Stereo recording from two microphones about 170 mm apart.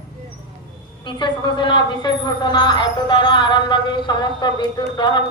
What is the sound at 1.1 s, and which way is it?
A woman's voice, 30° left (ahead or behind).